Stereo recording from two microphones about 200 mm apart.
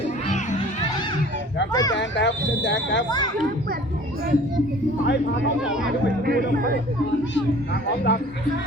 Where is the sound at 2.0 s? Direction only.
65° left (ahead or behind).